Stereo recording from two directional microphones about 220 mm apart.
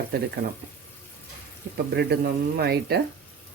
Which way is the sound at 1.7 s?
50° right (ahead or behind).